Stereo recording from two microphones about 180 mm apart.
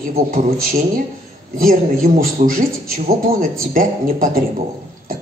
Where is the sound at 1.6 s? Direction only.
50° right (ahead or behind).